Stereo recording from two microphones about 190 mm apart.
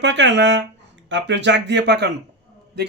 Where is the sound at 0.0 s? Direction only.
70° right (ahead or behind).